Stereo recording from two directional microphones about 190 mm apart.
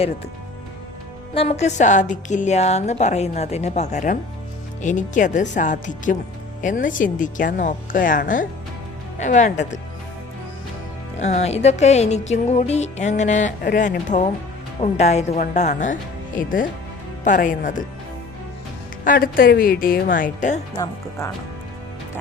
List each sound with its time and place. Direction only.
1.3 s music: 30° left (ahead or behind)
6.6 s speech: 45° left (ahead or behind)
9.1 s music: 40° left (ahead or behind)
11.2 s music: 35° left (ahead or behind)
17.2 s speech: 45° left (ahead or behind)
19.0 s speech: 50° left (ahead or behind)
20.7 s speech: 20° left (ahead or behind)